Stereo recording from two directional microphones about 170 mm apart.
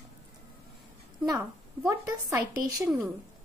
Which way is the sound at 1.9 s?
15° right (ahead or behind).